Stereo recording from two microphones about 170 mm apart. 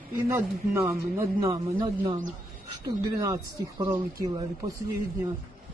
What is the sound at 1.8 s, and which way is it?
Speech, 35° right (ahead or behind).